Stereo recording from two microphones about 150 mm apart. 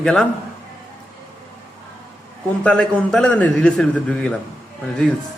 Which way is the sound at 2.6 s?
5° left (ahead or behind).